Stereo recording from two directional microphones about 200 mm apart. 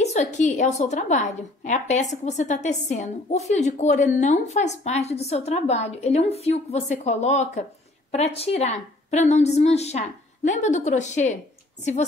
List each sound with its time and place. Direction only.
0.0 s a woman's voice: 35° left (ahead or behind)